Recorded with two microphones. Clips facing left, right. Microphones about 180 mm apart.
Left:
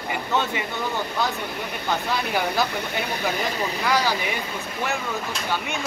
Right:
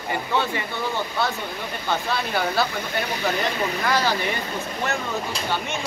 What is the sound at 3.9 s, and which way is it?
Speech, 10° left (ahead or behind).